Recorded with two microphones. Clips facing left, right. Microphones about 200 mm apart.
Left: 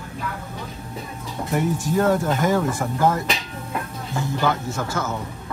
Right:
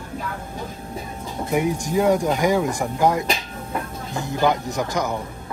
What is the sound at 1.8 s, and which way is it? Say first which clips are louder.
Speech: even; 15° right (ahead or behind).